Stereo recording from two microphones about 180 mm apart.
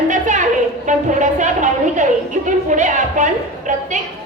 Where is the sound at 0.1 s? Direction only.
45° right (ahead or behind).